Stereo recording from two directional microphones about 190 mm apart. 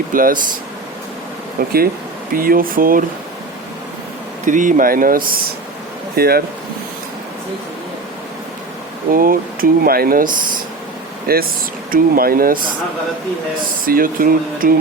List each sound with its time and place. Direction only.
0.1 s speech: 50° right (ahead or behind)
1.6 s speech: 50° right (ahead or behind)
4.4 s speech: 45° right (ahead or behind)
9.1 s speech: 50° right (ahead or behind)
11.3 s speech: 50° right (ahead or behind)
13.8 s speech: 50° right (ahead or behind)